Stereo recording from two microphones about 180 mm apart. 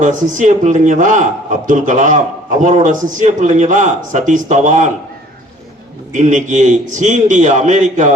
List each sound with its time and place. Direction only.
0.0 s a man's voice: 45° right (ahead or behind)
6.1 s a man's voice: 40° right (ahead or behind)